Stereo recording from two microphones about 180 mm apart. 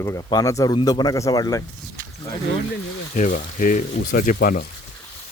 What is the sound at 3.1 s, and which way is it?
Speech, 45° left (ahead or behind).